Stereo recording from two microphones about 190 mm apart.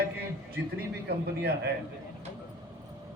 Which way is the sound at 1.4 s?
55° right (ahead or behind).